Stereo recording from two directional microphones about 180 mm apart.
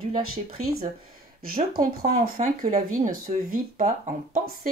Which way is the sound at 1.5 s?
50° right (ahead or behind).